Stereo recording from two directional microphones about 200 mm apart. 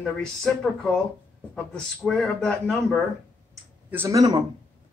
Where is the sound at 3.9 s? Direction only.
15° right (ahead or behind).